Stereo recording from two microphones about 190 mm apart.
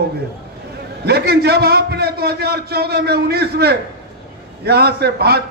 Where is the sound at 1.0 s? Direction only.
55° right (ahead or behind).